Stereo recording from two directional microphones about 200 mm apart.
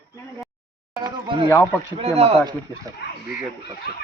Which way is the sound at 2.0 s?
30° right (ahead or behind).